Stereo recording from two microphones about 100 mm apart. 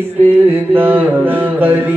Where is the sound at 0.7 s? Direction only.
20° right (ahead or behind).